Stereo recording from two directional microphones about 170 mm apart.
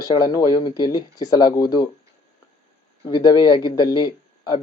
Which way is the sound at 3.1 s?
25° left (ahead or behind).